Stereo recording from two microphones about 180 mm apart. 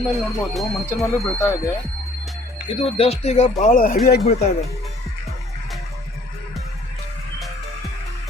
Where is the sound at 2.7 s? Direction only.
30° left (ahead or behind); by 4.2 s 55° left (ahead or behind).